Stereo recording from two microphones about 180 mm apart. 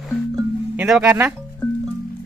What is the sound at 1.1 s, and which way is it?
Speech, 15° right (ahead or behind).